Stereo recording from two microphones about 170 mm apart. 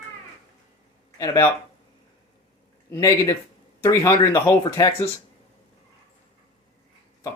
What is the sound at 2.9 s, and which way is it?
Speech, 20° left (ahead or behind).